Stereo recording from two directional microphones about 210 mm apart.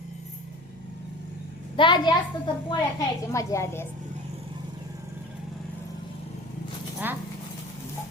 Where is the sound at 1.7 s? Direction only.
20° left (ahead or behind).